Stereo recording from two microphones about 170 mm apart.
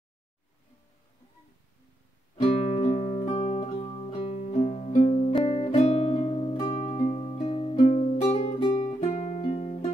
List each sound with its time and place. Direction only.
2.7 s music: 40° left (ahead or behind)
5.4 s music: 30° left (ahead or behind)
6.7 s music: 45° left (ahead or behind)
7.7 s music: 45° left (ahead or behind)
8.5 s music: 25° left (ahead or behind)
9.0 s music: 45° left (ahead or behind)